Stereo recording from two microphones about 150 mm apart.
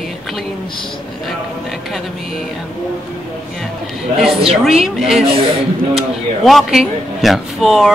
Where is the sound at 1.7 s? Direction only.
Centre (ahead or behind).